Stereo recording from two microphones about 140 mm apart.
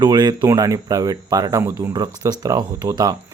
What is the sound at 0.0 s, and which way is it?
Speech, 30° right (ahead or behind).